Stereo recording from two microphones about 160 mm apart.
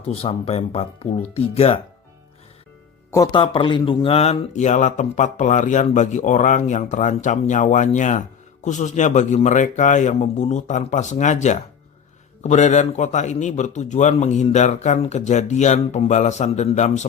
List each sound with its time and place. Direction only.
0.1 s speech: 40° left (ahead or behind)
3.3 s speech: 30° left (ahead or behind)